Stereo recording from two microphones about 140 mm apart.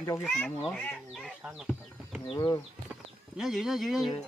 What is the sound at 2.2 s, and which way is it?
Speech, 35° left (ahead or behind).